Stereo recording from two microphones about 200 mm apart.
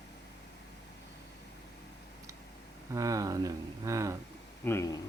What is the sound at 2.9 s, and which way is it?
Speech, 15° right (ahead or behind).